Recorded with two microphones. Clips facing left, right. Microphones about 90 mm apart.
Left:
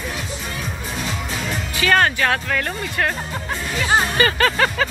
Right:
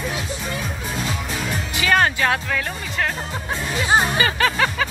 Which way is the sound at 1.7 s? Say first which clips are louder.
Left 1 dB; 20° right (ahead or behind).